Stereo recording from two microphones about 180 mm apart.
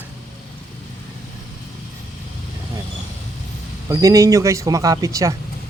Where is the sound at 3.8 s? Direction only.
20° right (ahead or behind).